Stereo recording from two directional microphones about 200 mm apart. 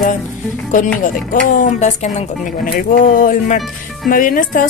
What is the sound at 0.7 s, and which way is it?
Speech, 40° left (ahead or behind).